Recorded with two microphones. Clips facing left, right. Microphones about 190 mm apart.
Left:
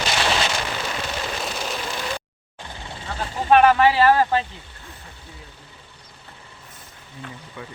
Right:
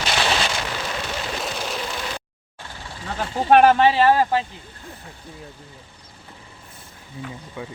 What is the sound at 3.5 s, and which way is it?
Speech, 50° right (ahead or behind).